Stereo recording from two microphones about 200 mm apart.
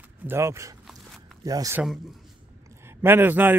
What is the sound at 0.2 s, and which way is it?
Speech, 10° right (ahead or behind).